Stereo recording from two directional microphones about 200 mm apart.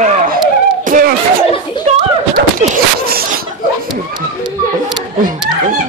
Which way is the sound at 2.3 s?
45° right (ahead or behind).